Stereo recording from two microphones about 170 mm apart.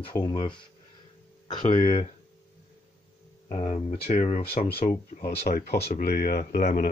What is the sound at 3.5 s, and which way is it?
Speech, 40° left (ahead or behind).